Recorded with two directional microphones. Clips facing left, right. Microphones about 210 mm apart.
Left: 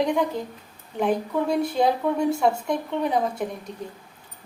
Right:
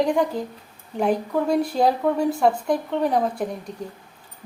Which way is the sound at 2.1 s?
Centre (ahead or behind).